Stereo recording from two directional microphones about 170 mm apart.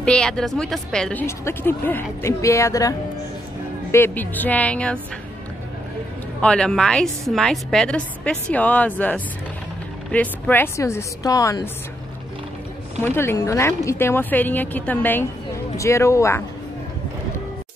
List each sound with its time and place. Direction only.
0.0 s a woman's voice: 5° left (ahead or behind)
1.2 s a woman's voice: 15° left (ahead or behind)
6.4 s a woman's voice: 5° left (ahead or behind)
13.0 s a woman's voice: 15° left (ahead or behind)